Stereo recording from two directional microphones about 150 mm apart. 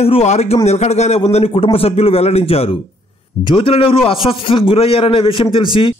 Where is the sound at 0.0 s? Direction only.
45° left (ahead or behind).